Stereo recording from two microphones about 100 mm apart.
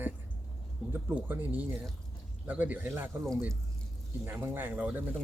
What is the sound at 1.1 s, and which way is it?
Speech, 15° right (ahead or behind).